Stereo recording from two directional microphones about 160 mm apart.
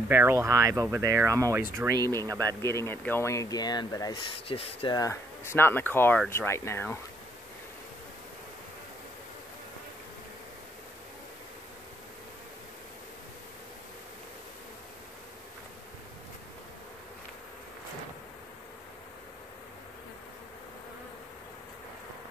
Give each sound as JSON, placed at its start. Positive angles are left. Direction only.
{"t": 0.1, "sound": "speech", "side_deg": -15}
{"t": 2.6, "sound": "speech", "side_deg": 15}
{"t": 4.5, "sound": "speech", "side_deg": 40}
{"t": 4.9, "sound": "speech", "side_deg": 20}